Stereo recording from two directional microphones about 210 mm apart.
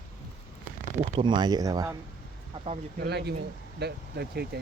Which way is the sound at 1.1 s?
20° right (ahead or behind).